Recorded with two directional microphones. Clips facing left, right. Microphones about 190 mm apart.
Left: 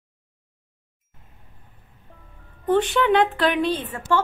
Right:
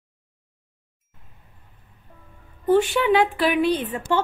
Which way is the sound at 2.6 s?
10° right (ahead or behind).